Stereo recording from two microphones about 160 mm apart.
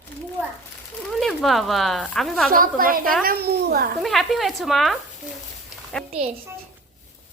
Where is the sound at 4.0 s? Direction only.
Centre (ahead or behind).